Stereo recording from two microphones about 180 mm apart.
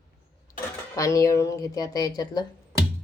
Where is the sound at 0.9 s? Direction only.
15° left (ahead or behind).